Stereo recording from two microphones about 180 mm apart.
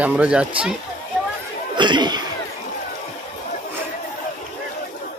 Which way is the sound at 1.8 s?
25° right (ahead or behind).